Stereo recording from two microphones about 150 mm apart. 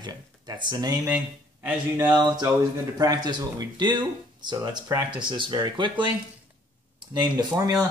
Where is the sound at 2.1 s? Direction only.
30° right (ahead or behind).